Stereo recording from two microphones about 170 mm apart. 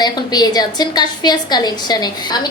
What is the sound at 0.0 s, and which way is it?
A woman's voice, 25° left (ahead or behind).